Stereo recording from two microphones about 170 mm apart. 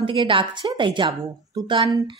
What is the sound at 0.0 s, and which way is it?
A woman's voice, 30° right (ahead or behind).